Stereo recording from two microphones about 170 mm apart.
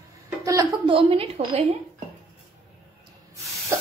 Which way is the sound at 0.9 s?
35° right (ahead or behind).